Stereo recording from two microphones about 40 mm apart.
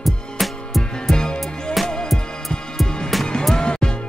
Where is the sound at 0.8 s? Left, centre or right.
Centre.